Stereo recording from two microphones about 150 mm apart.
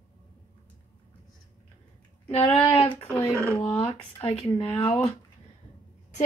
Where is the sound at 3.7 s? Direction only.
40° left (ahead or behind).